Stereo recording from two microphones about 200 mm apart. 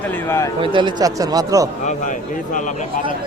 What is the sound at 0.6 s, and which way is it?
Speech, 25° right (ahead or behind).